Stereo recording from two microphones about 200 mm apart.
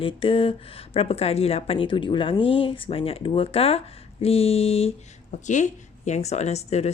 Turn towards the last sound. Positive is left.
turn(degrees=35)  # may be behind; listen again after turning